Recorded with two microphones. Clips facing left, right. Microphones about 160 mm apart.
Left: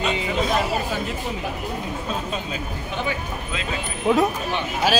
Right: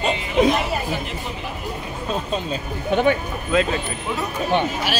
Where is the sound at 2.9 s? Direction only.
60° right (ahead or behind).